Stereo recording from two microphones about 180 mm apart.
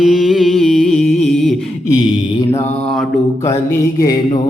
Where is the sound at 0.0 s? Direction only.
Centre (ahead or behind).